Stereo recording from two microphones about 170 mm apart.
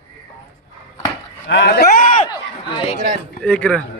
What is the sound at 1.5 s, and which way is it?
Speech, 80° left.